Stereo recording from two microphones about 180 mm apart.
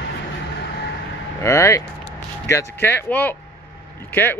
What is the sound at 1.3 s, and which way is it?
A man's voice, 15° left (ahead or behind).